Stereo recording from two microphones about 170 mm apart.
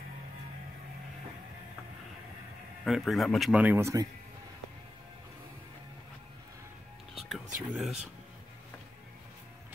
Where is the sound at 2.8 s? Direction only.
Centre (ahead or behind); by 4.1 s 20° right (ahead or behind).